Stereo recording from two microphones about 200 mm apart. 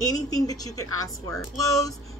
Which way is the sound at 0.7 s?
90° left.